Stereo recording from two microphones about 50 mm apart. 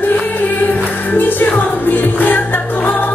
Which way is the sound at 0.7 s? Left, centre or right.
Left.